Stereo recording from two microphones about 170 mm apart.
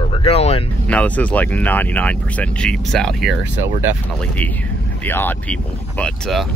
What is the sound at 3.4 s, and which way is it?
Speech, 10° right (ahead or behind).